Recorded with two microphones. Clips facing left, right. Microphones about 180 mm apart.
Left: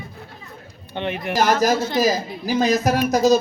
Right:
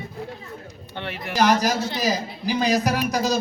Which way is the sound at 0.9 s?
20° left (ahead or behind).